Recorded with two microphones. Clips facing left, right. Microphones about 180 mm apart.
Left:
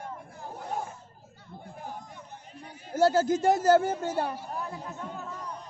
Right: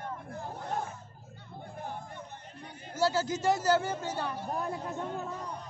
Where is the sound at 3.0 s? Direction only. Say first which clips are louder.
Left 6 dB; 50° left (ahead or behind).